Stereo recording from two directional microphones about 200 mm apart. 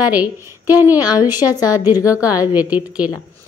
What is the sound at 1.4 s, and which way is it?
Speech, 20° left (ahead or behind).